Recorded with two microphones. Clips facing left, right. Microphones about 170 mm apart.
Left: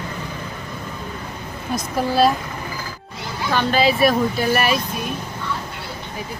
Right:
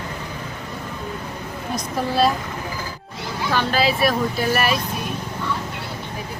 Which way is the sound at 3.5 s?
Centre (ahead or behind).